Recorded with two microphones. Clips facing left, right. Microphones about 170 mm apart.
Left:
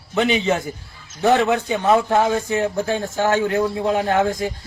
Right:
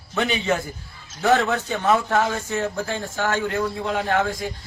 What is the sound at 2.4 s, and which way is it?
A man's voice, 15° left (ahead or behind).